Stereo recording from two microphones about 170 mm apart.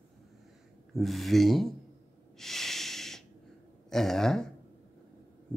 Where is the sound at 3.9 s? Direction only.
Centre (ahead or behind).